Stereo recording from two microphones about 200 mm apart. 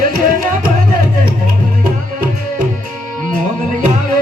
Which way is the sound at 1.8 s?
45° right (ahead or behind).